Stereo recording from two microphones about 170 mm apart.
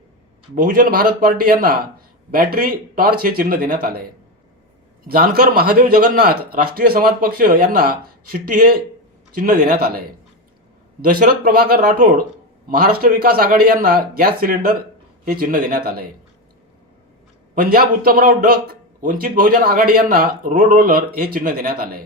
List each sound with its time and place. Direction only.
0.5 s a man's voice: 55° right (ahead or behind)
5.0 s a man's voice: 65° right (ahead or behind)
11.0 s a man's voice: 60° right (ahead or behind)
17.5 s a man's voice: 60° right (ahead or behind)